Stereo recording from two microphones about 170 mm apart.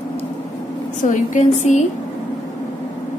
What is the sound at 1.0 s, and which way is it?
Speech, 50° left (ahead or behind).